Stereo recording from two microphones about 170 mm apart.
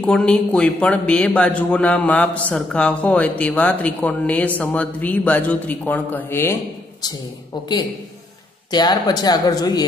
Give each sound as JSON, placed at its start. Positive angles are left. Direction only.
{"t": 0.0, "sound": "a man's voice", "side_deg": 5}
{"t": 8.7, "sound": "speech", "side_deg": 25}